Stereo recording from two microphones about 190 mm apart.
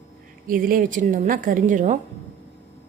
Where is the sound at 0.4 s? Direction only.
45° right (ahead or behind).